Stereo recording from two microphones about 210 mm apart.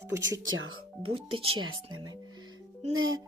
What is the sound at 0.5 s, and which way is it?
Speech, 70° right (ahead or behind).